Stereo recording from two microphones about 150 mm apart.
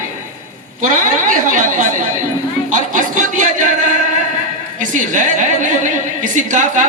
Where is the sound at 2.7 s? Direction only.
60° right (ahead or behind).